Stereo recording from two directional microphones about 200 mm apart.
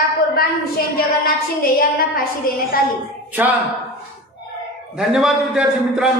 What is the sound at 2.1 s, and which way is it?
Speech, 45° left (ahead or behind).